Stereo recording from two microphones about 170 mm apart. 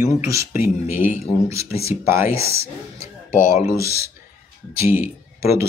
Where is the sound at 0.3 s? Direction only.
15° right (ahead or behind).